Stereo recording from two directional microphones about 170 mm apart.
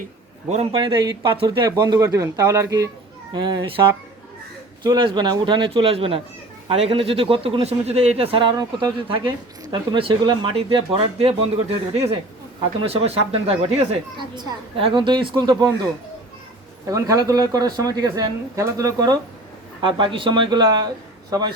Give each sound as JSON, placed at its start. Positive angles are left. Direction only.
{"t": 0.4, "sound": "speech", "side_deg": -40}
{"t": 16.8, "sound": "speech", "side_deg": -20}